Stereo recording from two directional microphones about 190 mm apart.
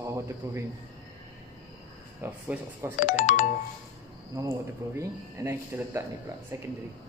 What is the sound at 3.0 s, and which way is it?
Speech, 40° left (ahead or behind).